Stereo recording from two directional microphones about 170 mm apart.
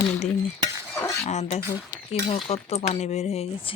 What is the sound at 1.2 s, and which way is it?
Speech, 40° left (ahead or behind).